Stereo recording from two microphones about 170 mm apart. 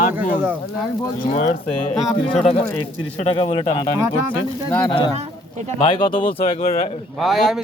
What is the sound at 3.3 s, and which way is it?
Speech, 30° left (ahead or behind).